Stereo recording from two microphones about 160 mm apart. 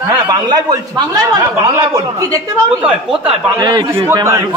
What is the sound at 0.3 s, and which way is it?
A man's voice, 25° right (ahead or behind).